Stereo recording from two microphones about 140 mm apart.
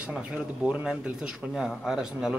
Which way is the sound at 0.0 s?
5° right (ahead or behind).